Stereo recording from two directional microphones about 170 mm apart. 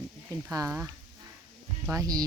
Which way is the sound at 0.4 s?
15° right (ahead or behind).